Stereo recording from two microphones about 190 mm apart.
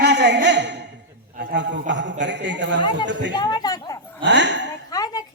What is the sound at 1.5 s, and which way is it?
A man's voice, 70° right (ahead or behind).